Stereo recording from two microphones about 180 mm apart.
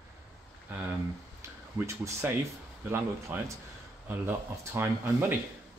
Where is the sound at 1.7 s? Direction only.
15° right (ahead or behind).